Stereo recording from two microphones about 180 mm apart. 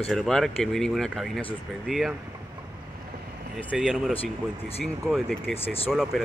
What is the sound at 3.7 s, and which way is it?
Speech, 5° right (ahead or behind).